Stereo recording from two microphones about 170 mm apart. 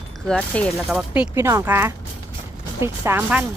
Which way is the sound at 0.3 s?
5° left (ahead or behind).